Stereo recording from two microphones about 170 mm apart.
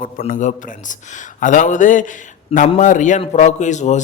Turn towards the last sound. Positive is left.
turn(degrees=45)  # may be behind; listen again after turning